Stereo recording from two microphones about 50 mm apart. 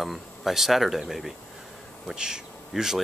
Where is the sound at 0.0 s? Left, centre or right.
Centre.